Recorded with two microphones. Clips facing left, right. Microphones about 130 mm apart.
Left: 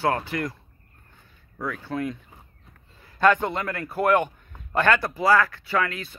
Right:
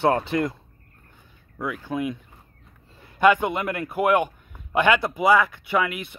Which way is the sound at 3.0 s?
25° right (ahead or behind).